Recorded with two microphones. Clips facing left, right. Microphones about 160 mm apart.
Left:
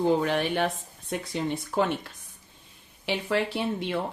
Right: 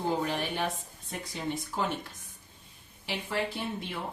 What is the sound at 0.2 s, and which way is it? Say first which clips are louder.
Speech: left 6 dB; 75° left (ahead or behind).